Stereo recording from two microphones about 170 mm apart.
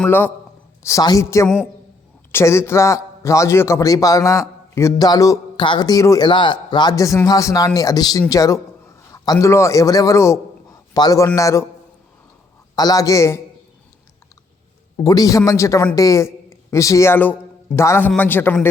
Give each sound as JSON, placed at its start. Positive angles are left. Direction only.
{"t": 0.0, "sound": "a woman's voice", "side_deg": 10}
{"t": 12.7, "sound": "speech", "side_deg": 20}
{"t": 14.9, "sound": "a woman's voice", "side_deg": 20}